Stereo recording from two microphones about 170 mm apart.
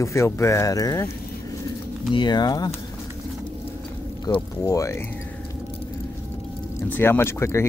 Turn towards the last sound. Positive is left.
turn(degrees=15)  # may be behind; listen again after turning